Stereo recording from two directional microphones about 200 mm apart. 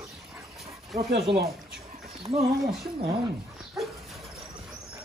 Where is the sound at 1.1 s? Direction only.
55° right (ahead or behind).